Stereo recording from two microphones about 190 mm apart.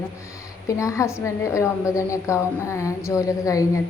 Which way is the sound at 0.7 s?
15° left (ahead or behind).